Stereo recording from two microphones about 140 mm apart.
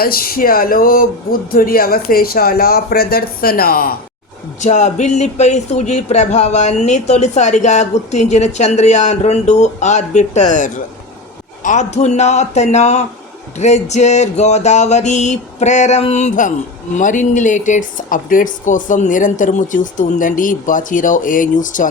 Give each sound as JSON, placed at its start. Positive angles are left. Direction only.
{"t": 0.0, "sound": "speech", "side_deg": 90}
{"t": 4.6, "sound": "speech", "side_deg": 60}